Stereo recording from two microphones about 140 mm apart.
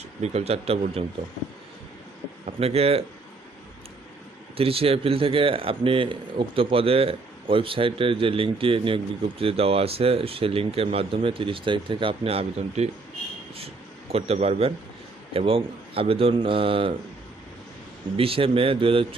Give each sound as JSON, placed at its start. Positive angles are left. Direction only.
{"t": 0.2, "sound": "speech", "side_deg": -50}
{"t": 2.6, "sound": "speech", "side_deg": -45}
{"t": 4.5, "sound": "speech", "side_deg": -45}
{"t": 14.1, "sound": "speech", "side_deg": -45}
{"t": 18.2, "sound": "speech", "side_deg": -40}